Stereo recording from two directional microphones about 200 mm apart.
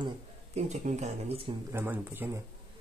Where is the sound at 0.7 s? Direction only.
35° right (ahead or behind).